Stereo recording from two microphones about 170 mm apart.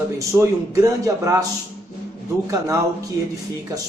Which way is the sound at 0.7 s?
20° right (ahead or behind).